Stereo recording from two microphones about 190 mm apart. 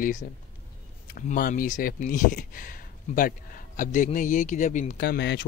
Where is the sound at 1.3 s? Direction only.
45° left (ahead or behind).